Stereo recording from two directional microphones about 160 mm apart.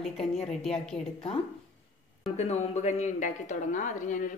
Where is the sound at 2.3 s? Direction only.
40° left (ahead or behind).